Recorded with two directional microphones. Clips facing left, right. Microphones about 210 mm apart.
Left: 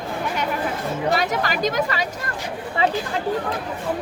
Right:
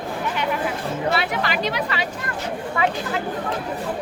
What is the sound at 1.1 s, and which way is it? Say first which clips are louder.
Speech: left 1 dB; 40° left (ahead or behind).